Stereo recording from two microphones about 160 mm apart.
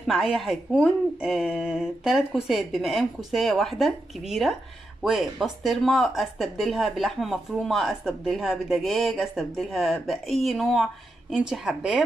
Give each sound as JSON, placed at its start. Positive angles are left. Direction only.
{"t": 0.0, "sound": "speech", "side_deg": 0}